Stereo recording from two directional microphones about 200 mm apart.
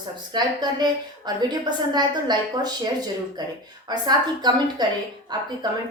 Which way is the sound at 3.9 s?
20° right (ahead or behind).